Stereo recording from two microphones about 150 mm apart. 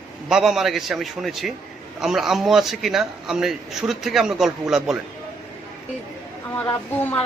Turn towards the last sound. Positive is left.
turn(degrees=10)  # may be behind; listen again after turning